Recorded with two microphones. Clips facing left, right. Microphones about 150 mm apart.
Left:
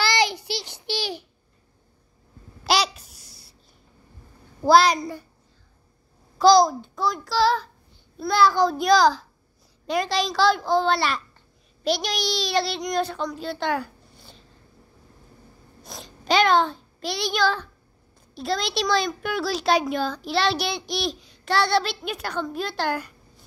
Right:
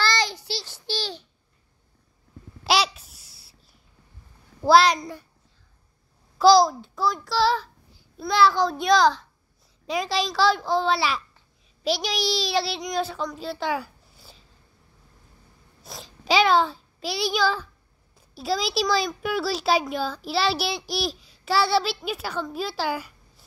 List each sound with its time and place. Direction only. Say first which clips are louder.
0.0 s child singing: left 3 dB; 15° left (ahead or behind)
2.6 s a sound: even; centre (ahead or behind)
4.6 s speech: even; centre (ahead or behind)
6.3 s a child's voice: even; 5° right (ahead or behind)
15.8 s a sound: left 1 dB; 5° right (ahead or behind)
18.1 s speech: even; 5° right (ahead or behind)